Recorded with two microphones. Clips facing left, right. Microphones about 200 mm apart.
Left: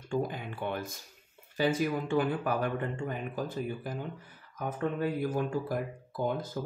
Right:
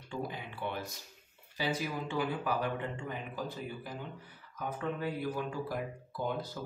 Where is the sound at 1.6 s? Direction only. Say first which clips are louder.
Left 6 dB; 50° left (ahead or behind).